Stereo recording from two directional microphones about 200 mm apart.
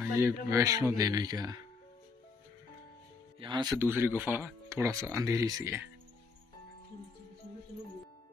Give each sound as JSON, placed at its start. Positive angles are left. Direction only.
{"t": 0.0, "sound": "speech", "side_deg": -10}
{"t": 3.3, "sound": "speech", "side_deg": -25}